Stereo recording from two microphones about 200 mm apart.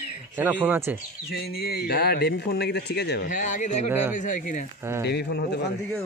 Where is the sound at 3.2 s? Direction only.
40° left (ahead or behind).